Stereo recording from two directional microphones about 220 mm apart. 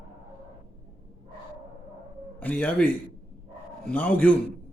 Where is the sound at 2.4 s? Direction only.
5° left (ahead or behind).